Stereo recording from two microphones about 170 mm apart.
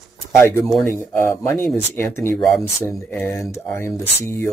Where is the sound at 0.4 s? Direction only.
15° left (ahead or behind).